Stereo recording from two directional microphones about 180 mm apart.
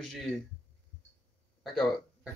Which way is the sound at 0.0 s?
5° left (ahead or behind).